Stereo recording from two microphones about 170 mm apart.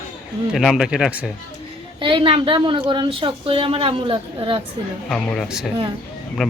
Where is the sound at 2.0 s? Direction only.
30° right (ahead or behind).